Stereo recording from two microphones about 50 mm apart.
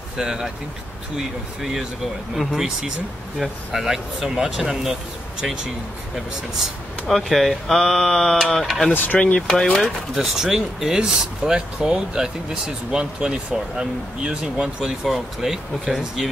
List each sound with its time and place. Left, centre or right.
0.2 s speech: centre
1.6 s speech: centre
7.1 s speech: centre
8.9 s speech: left
9.5 s speech: centre
10.1 s speech: centre
15.0 s speech: centre